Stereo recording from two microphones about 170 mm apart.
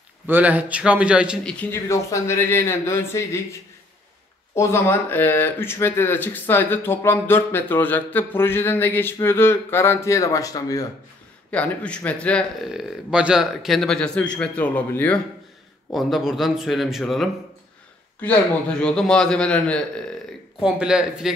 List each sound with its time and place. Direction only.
0.3 s a man's voice: 10° right (ahead or behind)
1.4 s speech: 5° left (ahead or behind)
4.6 s speech: 15° left (ahead or behind)
11.5 s speech: 10° left (ahead or behind)
15.9 s a man's voice: centre (ahead or behind)
20.6 s a man's voice: 5° right (ahead or behind)